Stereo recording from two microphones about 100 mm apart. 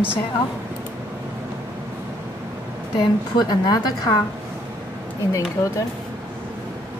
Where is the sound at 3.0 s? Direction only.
45° left (ahead or behind).